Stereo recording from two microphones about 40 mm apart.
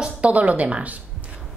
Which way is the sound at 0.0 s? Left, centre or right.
Right.